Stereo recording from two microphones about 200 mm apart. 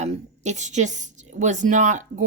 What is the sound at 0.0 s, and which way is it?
A woman's voice, 35° right (ahead or behind).